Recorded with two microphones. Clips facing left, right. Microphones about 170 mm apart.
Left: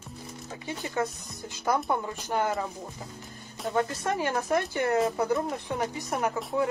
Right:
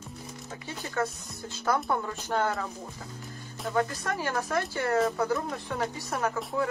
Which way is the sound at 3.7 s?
25° left (ahead or behind).